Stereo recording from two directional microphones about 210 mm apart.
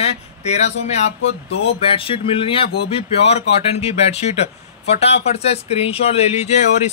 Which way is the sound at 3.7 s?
30° left (ahead or behind).